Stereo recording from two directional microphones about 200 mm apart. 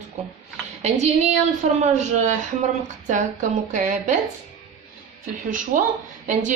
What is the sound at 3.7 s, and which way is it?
Speech, 40° right (ahead or behind).